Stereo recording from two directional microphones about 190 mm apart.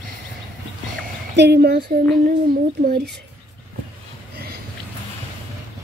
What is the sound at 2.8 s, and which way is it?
Speech, 60° right (ahead or behind).